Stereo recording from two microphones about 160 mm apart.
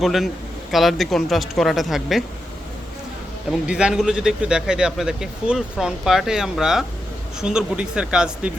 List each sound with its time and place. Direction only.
0.0 s speech: centre (ahead or behind)
3.7 s speech: 5° right (ahead or behind)